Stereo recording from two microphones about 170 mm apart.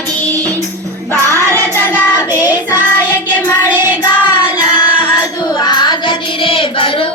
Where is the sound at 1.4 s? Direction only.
15° right (ahead or behind).